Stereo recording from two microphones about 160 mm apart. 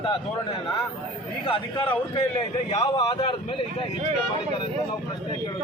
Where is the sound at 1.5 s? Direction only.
35° left (ahead or behind).